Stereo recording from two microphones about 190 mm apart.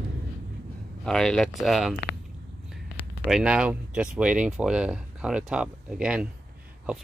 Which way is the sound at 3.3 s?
5° right (ahead or behind).